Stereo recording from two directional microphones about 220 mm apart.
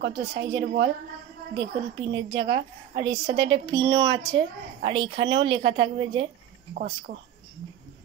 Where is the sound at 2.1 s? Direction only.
60° right (ahead or behind).